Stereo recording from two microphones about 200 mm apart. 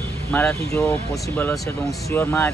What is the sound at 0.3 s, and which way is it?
Speech, 10° left (ahead or behind).